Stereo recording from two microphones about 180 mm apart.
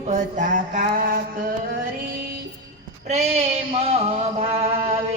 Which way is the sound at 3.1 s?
35° right (ahead or behind).